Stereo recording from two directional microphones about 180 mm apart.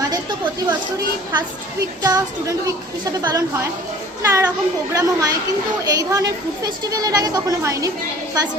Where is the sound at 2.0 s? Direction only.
20° right (ahead or behind).